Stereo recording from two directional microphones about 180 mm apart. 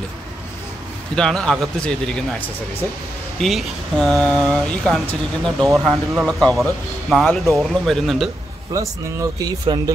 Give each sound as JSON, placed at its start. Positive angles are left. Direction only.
{"t": 1.1, "sound": "speech", "side_deg": 5}
{"t": 5.7, "sound": "speech", "side_deg": -15}
{"t": 6.1, "sound": "speech", "side_deg": 0}
{"t": 8.7, "sound": "speech", "side_deg": -20}